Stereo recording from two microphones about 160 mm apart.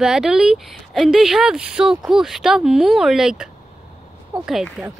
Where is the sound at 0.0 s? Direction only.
5° right (ahead or behind).